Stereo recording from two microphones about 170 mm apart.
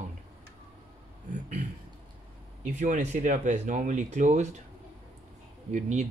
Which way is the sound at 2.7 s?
45° right (ahead or behind).